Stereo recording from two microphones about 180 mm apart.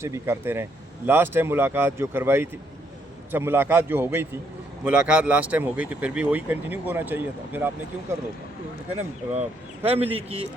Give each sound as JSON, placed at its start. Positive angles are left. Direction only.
{"t": 0.0, "sound": "speech", "side_deg": -15}
{"t": 9.0, "sound": "speech", "side_deg": -40}